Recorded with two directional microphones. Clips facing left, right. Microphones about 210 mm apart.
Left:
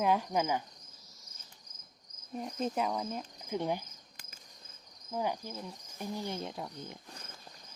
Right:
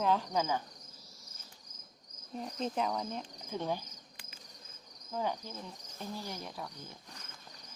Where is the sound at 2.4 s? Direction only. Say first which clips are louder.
Left 1 dB; centre (ahead or behind).